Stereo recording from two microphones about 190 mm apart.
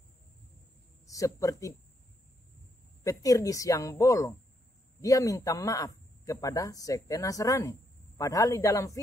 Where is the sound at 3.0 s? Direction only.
20° left (ahead or behind).